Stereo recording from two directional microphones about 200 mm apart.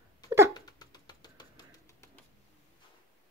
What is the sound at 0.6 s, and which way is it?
Music, 20° left (ahead or behind).